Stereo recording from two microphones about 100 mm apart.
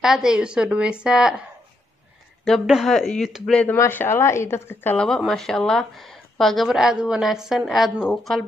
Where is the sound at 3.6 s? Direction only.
25° left (ahead or behind).